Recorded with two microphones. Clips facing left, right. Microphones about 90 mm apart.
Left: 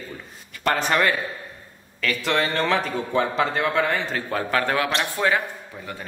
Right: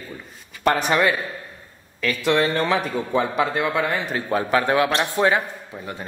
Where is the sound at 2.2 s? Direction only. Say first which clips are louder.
Right 3 dB; 15° right (ahead or behind).